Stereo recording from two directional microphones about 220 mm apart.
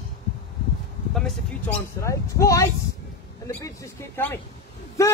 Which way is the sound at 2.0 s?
15° left (ahead or behind).